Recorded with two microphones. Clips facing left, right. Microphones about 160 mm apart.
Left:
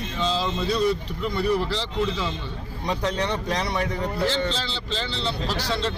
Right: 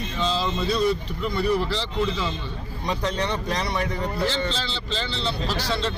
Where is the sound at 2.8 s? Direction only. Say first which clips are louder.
Left 1 dB; 55° left (ahead or behind).